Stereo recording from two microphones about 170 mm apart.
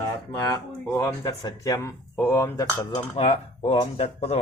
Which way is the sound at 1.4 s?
20° left (ahead or behind).